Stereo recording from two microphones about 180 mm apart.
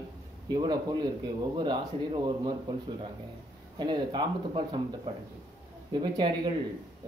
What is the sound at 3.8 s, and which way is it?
Speech, 25° right (ahead or behind).